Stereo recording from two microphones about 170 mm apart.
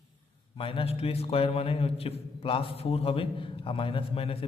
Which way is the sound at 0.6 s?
35° left (ahead or behind).